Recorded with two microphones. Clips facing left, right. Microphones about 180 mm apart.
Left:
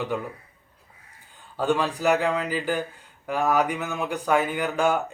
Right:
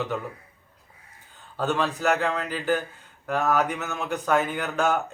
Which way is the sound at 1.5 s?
10° left (ahead or behind).